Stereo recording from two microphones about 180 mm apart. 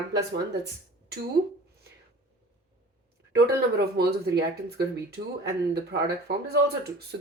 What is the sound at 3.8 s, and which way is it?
Speech, 65° right (ahead or behind).